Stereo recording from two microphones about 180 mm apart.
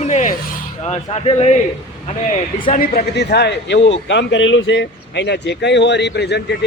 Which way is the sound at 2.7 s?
55° left (ahead or behind).